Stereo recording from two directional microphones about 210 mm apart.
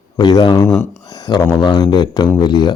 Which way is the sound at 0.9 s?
20° left (ahead or behind).